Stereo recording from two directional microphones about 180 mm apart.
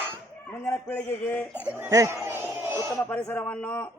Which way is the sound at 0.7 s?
10° left (ahead or behind).